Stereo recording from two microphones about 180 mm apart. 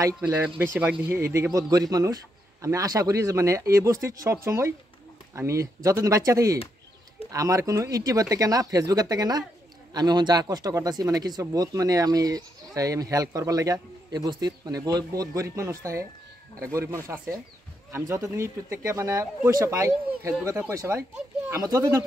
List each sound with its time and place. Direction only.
0.7 s a man's voice: 10° right (ahead or behind)
17.1 s speech: 15° right (ahead or behind)